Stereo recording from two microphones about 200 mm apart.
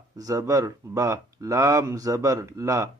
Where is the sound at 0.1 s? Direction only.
15° right (ahead or behind).